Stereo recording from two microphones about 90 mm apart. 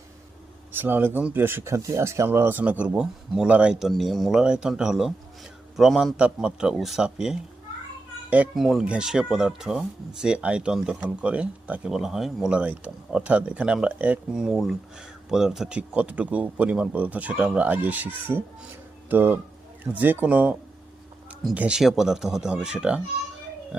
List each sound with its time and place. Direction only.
0.7 s a man's voice: 20° right (ahead or behind); by 6.1 s centre (ahead or behind)
6.1 s speech: 10° right (ahead or behind)
8.5 s speech: 5° right (ahead or behind)
14.3 s a man's voice: 5° right (ahead or behind)
21.8 s speech: 5° right (ahead or behind)